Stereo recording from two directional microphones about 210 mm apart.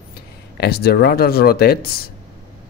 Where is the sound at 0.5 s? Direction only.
50° left (ahead or behind).